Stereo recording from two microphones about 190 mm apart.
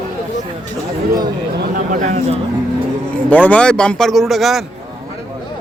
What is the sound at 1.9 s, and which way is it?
Speech, 40° right (ahead or behind).